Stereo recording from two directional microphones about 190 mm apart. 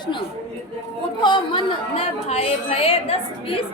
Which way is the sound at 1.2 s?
25° left (ahead or behind).